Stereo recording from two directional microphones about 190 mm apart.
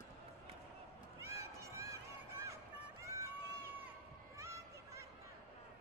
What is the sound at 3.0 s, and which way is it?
Run, 15° right (ahead or behind).